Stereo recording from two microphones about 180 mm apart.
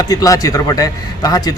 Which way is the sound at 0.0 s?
20° left (ahead or behind).